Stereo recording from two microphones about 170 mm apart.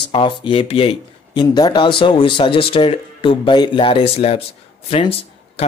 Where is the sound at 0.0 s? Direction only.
30° left (ahead or behind).